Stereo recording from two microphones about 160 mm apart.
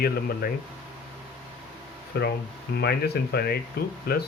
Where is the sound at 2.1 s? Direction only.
90° left.